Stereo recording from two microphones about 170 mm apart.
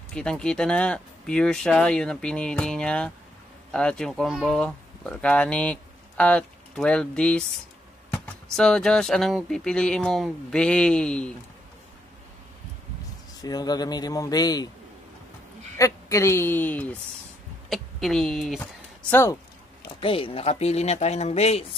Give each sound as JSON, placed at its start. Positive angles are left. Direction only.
{"t": 0.1, "sound": "speech", "side_deg": 5}
{"t": 13.4, "sound": "speech", "side_deg": 25}
{"t": 15.8, "sound": "a woman's voice", "side_deg": 15}
{"t": 19.0, "sound": "a woman's voice", "side_deg": 15}
{"t": 20.0, "sound": "speech", "side_deg": 30}